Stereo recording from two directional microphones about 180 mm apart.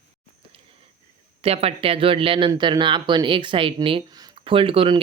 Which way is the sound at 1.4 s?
35° right (ahead or behind).